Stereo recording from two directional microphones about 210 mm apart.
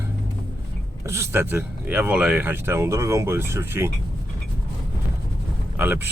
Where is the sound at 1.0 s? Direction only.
15° right (ahead or behind).